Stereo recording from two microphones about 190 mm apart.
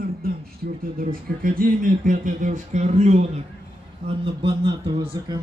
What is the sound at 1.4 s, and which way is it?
A man's voice, 50° right (ahead or behind).